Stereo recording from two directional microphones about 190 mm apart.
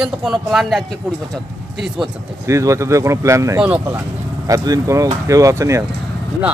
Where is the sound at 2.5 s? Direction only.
15° right (ahead or behind).